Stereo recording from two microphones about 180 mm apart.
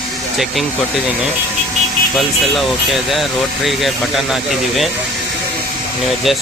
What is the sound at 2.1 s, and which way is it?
Speech, centre (ahead or behind).